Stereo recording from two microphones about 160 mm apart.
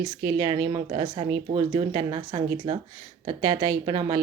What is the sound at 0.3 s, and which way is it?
Speech, 30° right (ahead or behind).